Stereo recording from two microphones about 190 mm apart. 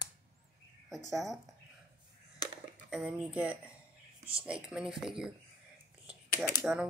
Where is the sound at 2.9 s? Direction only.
5° right (ahead or behind).